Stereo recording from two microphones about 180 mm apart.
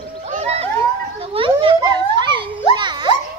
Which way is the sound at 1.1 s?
30° right (ahead or behind).